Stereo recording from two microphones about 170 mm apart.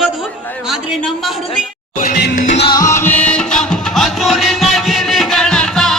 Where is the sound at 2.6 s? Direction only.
20° left (ahead or behind); by 6.0 s 5° left (ahead or behind).